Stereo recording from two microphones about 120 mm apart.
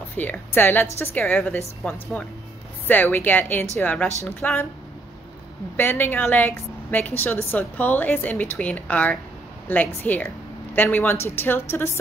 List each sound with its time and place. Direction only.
0.2 s speech: 15° left (ahead or behind)
5.8 s speech: 15° left (ahead or behind)